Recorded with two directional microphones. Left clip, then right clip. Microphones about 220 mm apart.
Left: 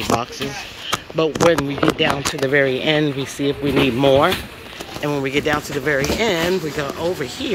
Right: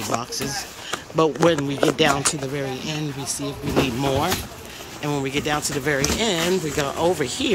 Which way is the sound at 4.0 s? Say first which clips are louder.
Left 8 dB; 5° right (ahead or behind).